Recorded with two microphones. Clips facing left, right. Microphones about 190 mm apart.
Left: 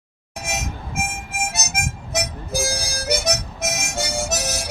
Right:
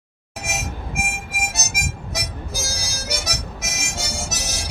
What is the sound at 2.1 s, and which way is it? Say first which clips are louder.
Harmonica: left 5 dB; 55° left (ahead or behind).